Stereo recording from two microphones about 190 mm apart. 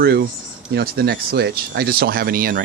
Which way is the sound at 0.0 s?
55° right (ahead or behind).